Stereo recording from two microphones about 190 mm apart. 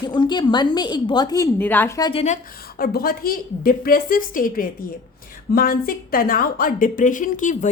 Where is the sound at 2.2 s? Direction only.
45° left (ahead or behind).